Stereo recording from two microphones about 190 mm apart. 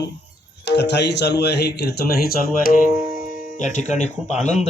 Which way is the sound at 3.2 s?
45° left (ahead or behind).